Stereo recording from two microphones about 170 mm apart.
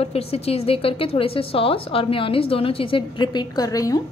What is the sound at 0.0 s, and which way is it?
A woman's voice, 35° left (ahead or behind).